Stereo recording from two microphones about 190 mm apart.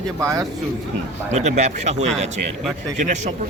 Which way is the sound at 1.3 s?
35° right (ahead or behind).